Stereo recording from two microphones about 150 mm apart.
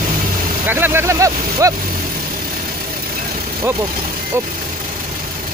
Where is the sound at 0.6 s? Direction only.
15° right (ahead or behind).